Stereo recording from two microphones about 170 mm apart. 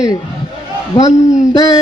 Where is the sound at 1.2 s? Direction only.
45° left (ahead or behind).